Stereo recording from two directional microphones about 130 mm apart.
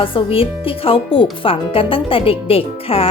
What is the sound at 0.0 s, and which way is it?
A woman's voice, 45° left (ahead or behind).